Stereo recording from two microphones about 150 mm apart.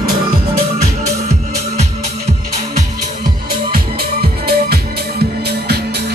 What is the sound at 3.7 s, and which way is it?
Music, 90° right.